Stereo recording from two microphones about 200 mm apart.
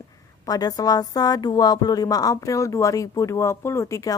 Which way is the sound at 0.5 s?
20° left (ahead or behind).